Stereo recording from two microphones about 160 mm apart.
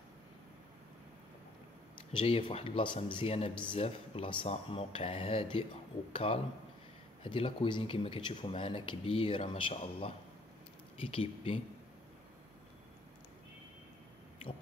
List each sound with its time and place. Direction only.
2.1 s speech: 35° left (ahead or behind)